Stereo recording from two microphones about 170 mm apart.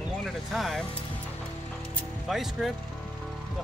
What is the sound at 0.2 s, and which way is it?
Music, centre (ahead or behind).